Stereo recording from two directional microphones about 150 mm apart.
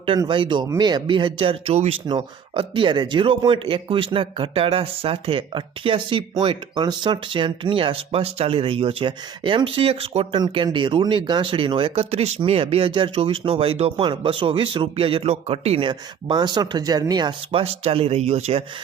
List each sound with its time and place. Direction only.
0.2 s speech: 30° right (ahead or behind)
17.6 s speech: 40° right (ahead or behind)